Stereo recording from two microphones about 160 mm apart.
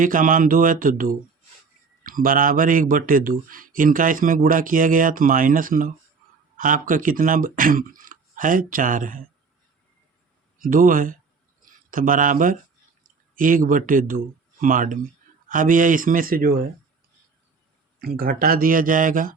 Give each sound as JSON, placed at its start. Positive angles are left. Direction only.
{"t": 0.0, "sound": "speech", "side_deg": -55}
{"t": 10.6, "sound": "speech", "side_deg": -60}
{"t": 18.0, "sound": "speech", "side_deg": -70}